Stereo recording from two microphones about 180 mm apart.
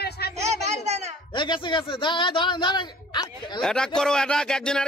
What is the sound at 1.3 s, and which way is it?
Speech, 25° left (ahead or behind).